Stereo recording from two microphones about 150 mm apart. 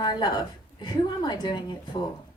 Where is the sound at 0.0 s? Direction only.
30° left (ahead or behind).